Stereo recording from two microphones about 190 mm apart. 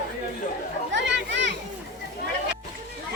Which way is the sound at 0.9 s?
70° right (ahead or behind).